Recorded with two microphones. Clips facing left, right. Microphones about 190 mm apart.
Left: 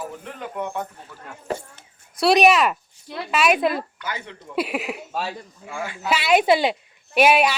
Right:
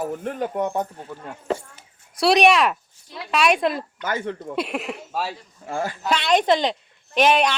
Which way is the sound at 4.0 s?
50° right (ahead or behind).